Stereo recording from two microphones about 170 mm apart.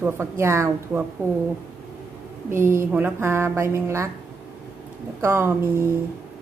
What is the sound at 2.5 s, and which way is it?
A woman's voice, 15° right (ahead or behind).